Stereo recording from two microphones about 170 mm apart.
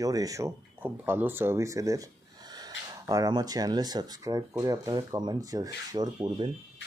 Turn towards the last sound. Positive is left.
turn(degrees=-25)  # may be behind; listen again after turning